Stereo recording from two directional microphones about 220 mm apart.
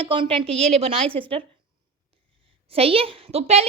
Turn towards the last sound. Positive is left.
turn(degrees=-30)  # may be behind; listen again after turning